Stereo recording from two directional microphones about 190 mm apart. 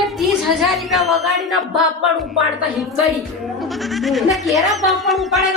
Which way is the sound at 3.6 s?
Centre (ahead or behind).